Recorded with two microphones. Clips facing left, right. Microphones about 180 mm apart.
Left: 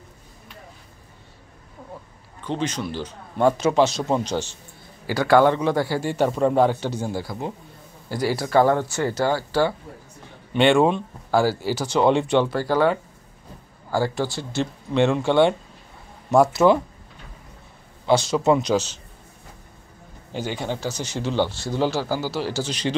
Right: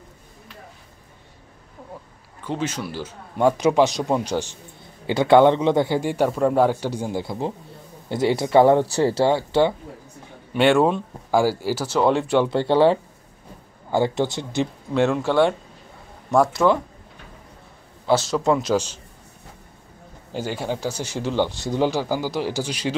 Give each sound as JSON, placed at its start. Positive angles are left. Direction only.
{"t": 2.4, "sound": "speech", "side_deg": -5}
{"t": 5.0, "sound": "a man's voice", "side_deg": -20}
{"t": 10.5, "sound": "speech", "side_deg": -5}
{"t": 12.4, "sound": "a man's voice", "side_deg": -25}
{"t": 15.0, "sound": "speech", "side_deg": -5}
{"t": 18.0, "sound": "speech", "side_deg": -5}
{"t": 20.3, "sound": "speech", "side_deg": -5}